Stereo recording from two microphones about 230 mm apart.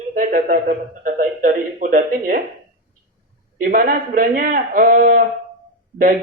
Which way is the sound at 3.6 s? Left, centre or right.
Right.